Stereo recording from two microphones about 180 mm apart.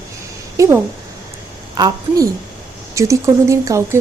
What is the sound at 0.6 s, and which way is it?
Speech, 20° right (ahead or behind).